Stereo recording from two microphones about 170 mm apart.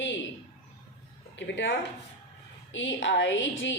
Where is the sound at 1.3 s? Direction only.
90° left.